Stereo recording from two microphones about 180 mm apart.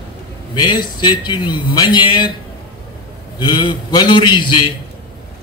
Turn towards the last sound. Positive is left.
turn(degrees=25)  # may be behind; listen again after turning